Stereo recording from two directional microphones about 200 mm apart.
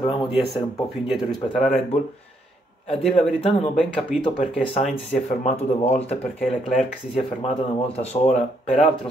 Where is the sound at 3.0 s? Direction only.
Centre (ahead or behind).